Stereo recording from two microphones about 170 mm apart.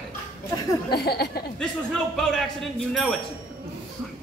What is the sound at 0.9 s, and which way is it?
Speech, 70° left (ahead or behind).